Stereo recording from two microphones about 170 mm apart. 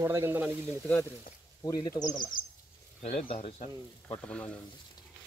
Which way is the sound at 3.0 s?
40° left (ahead or behind).